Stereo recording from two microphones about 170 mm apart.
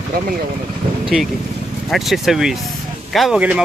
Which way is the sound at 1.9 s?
Centre (ahead or behind).